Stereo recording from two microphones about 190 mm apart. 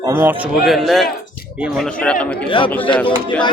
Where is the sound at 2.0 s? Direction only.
5° left (ahead or behind).